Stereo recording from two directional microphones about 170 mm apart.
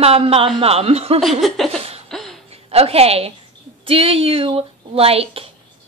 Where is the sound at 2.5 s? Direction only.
35° right (ahead or behind).